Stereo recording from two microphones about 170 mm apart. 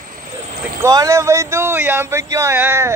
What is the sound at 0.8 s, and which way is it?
Speech, 20° right (ahead or behind).